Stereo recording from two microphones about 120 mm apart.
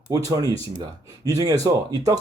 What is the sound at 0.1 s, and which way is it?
Speech, 30° right (ahead or behind).